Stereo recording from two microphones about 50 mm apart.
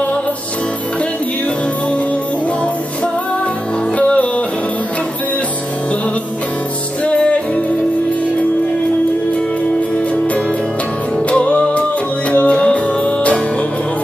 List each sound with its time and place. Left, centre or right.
4.0 s music: left
7.1 s music: left
11.2 s music: left